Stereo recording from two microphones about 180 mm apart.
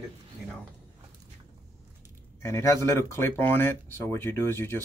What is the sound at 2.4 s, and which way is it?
Speech, 15° left (ahead or behind).